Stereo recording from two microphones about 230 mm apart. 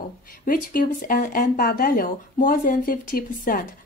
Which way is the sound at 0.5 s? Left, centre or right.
Left.